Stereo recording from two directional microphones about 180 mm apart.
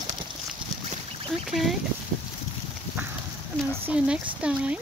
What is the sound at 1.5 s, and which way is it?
Speech, centre (ahead or behind).